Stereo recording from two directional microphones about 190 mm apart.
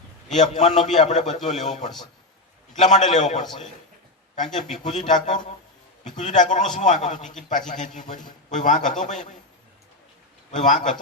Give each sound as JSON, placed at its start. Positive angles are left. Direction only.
{"t": 0.3, "sound": "a man's voice", "side_deg": 40}
{"t": 4.5, "sound": "a man's voice", "side_deg": 40}
{"t": 10.5, "sound": "a man's voice", "side_deg": 40}